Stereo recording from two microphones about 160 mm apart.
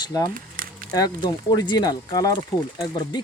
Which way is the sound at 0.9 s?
25° left (ahead or behind).